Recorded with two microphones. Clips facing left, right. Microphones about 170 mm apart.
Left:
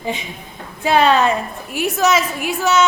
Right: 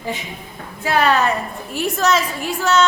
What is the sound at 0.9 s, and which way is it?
A woman's voice, 20° left (ahead or behind).